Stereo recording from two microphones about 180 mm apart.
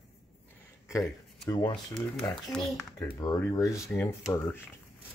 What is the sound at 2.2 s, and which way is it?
Speech, 5° left (ahead or behind).